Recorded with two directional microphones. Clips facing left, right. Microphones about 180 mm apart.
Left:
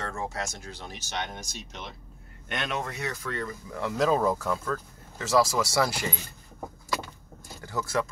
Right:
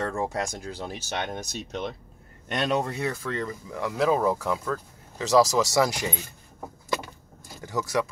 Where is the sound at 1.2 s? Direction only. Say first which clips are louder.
Right 4 dB; 55° right (ahead or behind).